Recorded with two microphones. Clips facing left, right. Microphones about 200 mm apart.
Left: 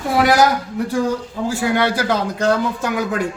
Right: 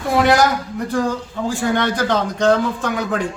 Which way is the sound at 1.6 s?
10° left (ahead or behind).